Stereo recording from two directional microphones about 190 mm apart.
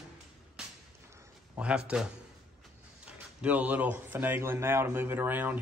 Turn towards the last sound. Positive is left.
turn(degrees=-10)  # may be behind; listen again after turning